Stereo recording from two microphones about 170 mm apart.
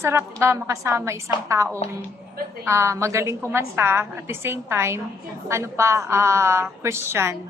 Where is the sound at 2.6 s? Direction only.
15° right (ahead or behind).